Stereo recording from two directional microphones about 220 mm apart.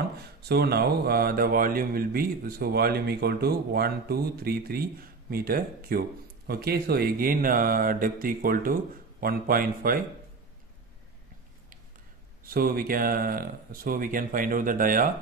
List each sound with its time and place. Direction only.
0.4 s speech: 50° right (ahead or behind)
12.4 s speech: 40° right (ahead or behind)